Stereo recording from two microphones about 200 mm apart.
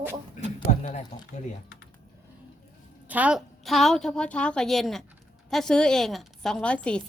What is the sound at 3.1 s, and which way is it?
A woman's voice, 5° right (ahead or behind).